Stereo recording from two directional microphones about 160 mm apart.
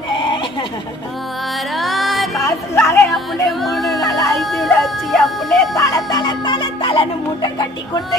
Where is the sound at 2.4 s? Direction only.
15° left (ahead or behind).